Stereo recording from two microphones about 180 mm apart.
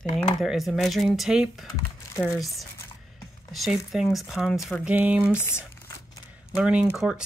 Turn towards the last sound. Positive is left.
turn(degrees=-5)  # may be behind; listen again after turning